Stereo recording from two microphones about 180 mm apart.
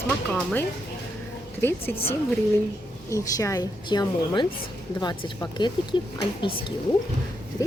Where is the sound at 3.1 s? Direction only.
20° left (ahead or behind).